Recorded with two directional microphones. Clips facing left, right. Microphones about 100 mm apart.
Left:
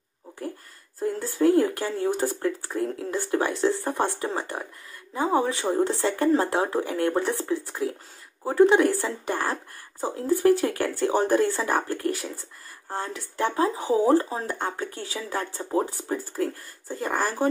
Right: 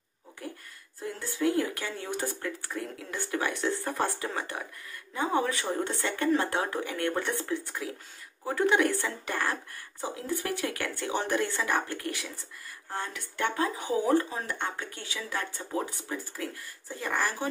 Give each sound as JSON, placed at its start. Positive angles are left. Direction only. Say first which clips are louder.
{"t": 0.4, "sound": "speech", "louder": "left 6 dB", "side_deg": 35}
{"t": 3.8, "sound": "speech", "louder": "left 4 dB", "side_deg": 20}